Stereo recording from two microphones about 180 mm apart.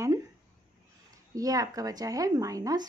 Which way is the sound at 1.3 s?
20° right (ahead or behind).